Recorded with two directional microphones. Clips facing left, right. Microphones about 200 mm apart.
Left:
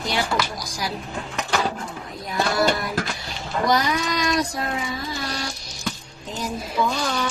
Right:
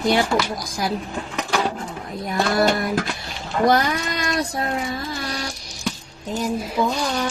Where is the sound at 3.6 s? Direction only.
55° right (ahead or behind).